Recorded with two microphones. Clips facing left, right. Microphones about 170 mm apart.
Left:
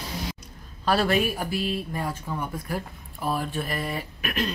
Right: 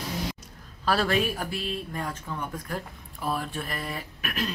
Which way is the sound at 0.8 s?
Centre (ahead or behind).